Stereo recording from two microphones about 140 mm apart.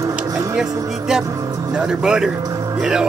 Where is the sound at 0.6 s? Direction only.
5° right (ahead or behind).